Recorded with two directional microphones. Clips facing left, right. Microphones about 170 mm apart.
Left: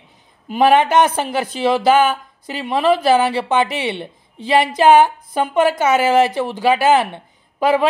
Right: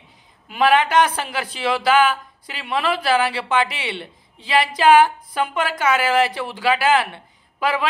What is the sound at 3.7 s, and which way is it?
Speech, 50° left (ahead or behind).